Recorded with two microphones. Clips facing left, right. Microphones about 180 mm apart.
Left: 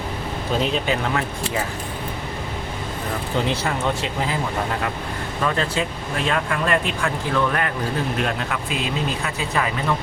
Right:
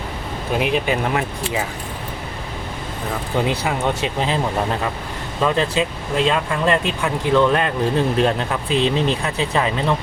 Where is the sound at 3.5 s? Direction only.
15° right (ahead or behind).